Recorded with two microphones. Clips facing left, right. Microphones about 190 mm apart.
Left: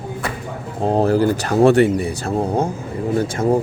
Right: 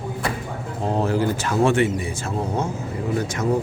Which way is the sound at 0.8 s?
35° left (ahead or behind).